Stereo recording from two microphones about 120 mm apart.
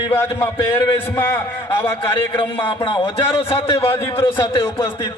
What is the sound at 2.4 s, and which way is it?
Speech, 45° left (ahead or behind).